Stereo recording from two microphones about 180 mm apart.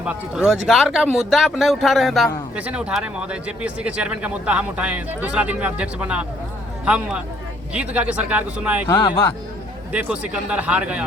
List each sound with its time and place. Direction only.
0.0 s speech: 5° right (ahead or behind)
8.9 s speech: 20° left (ahead or behind)
9.9 s speech: 5° right (ahead or behind)